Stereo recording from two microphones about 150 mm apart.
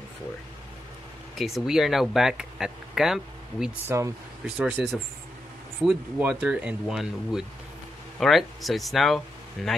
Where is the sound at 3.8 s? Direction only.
20° right (ahead or behind).